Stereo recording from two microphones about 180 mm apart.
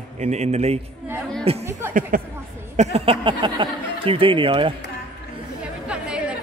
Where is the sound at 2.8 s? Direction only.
35° right (ahead or behind).